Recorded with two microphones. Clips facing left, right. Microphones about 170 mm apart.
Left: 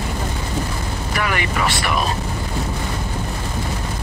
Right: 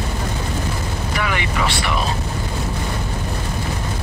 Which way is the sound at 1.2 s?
50° left (ahead or behind).